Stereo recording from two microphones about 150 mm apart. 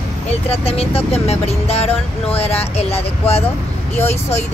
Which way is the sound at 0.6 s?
40° left (ahead or behind).